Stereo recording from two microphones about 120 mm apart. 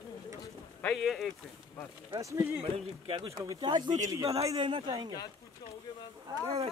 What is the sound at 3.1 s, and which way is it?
Speech, 45° right (ahead or behind).